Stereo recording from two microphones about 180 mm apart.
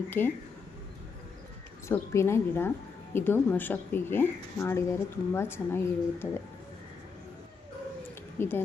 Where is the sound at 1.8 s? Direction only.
15° left (ahead or behind).